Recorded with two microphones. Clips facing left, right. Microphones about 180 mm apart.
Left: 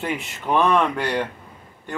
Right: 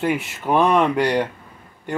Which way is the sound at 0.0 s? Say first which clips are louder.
Right 5 dB; 10° right (ahead or behind).